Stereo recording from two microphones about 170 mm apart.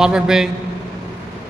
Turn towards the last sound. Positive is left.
turn(degrees=-5)  # may be behind; listen again after turning